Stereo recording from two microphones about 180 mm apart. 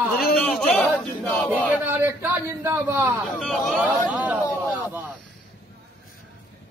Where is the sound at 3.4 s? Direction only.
Centre (ahead or behind).